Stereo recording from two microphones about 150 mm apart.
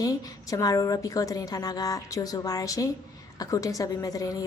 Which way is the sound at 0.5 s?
25° left (ahead or behind).